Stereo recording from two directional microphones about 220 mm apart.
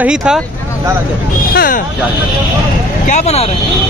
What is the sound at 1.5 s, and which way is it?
Speech, 40° left (ahead or behind).